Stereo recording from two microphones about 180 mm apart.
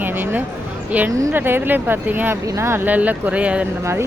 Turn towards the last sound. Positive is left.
turn(degrees=-10)  # may be behind; listen again after turning